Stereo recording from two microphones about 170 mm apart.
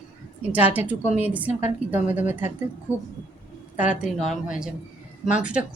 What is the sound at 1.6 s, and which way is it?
Speech, 40° left (ahead or behind).